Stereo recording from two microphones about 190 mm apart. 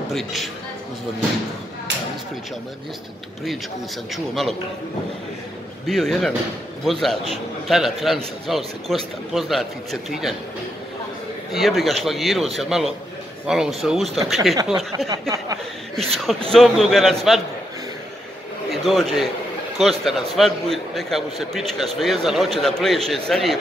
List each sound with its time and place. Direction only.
0.1 s a man's voice: centre (ahead or behind)
4.1 s a man's voice: centre (ahead or behind)
5.9 s a man's voice: centre (ahead or behind)
11.5 s a man's voice: centre (ahead or behind)
15.2 s speech: 15° right (ahead or behind)
16.2 s a man's voice: centre (ahead or behind)
18.7 s a man's voice: centre (ahead or behind)